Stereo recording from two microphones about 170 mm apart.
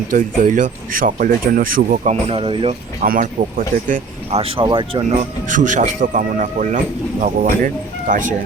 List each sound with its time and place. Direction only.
0.1 s speech: 50° right (ahead or behind)
2.2 s speech: 35° right (ahead or behind)
3.0 s speech: 55° right (ahead or behind)
4.3 s speech: 35° right (ahead or behind)
5.0 s speech: 50° right (ahead or behind)